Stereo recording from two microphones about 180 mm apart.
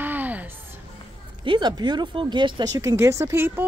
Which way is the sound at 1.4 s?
25° right (ahead or behind).